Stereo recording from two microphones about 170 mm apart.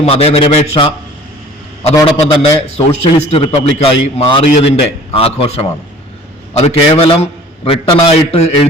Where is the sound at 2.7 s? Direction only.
40° left (ahead or behind).